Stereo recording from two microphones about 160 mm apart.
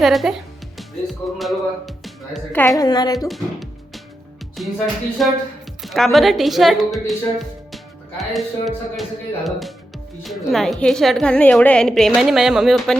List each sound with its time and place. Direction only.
0.0 s a woman's voice: centre (ahead or behind)
0.8 s music: centre (ahead or behind)
2.5 s speech: 15° left (ahead or behind)
3.2 s music: centre (ahead or behind)
5.2 s a woman's voice: centre (ahead or behind)